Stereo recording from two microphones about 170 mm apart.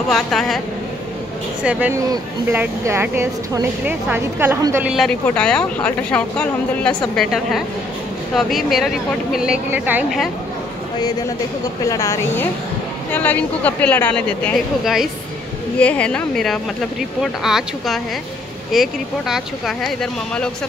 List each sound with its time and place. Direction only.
0.1 s a woman's voice: centre (ahead or behind)
1.6 s speech: 10° right (ahead or behind)
4.9 s a woman's voice: 5° left (ahead or behind)
11.0 s a woman's voice: 25° left (ahead or behind); by 20.5 s 5° left (ahead or behind)